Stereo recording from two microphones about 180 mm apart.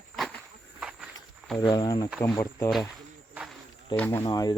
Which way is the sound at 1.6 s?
20° left (ahead or behind).